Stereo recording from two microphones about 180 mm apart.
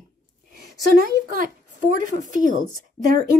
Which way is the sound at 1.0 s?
55° right (ahead or behind).